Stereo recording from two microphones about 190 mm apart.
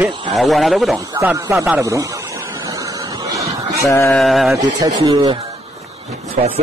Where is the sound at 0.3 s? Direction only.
Centre (ahead or behind).